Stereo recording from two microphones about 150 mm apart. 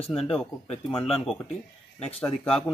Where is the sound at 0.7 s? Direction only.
40° left (ahead or behind).